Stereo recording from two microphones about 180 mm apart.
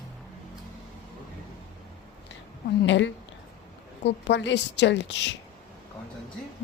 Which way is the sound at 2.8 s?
90° left.